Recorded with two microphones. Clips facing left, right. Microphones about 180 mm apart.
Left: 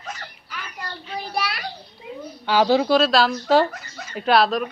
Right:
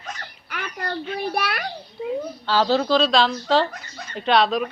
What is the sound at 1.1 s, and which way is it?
Speech, 55° right (ahead or behind).